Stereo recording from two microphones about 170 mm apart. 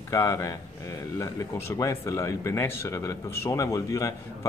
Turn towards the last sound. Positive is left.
turn(degrees=20)  # may be behind; listen again after turning